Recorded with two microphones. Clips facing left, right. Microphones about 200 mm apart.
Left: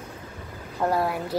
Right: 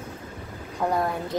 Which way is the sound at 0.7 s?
5° left (ahead or behind).